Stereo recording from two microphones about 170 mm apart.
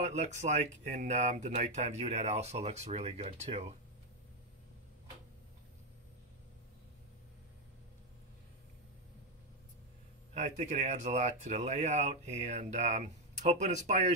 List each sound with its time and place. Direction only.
0.0 s speech: 45° right (ahead or behind)
10.3 s speech: 45° right (ahead or behind)